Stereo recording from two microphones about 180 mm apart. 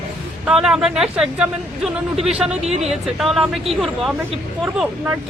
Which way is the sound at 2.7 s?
35° right (ahead or behind).